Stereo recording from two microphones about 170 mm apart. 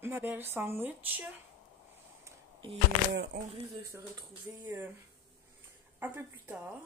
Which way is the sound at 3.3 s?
60° right (ahead or behind).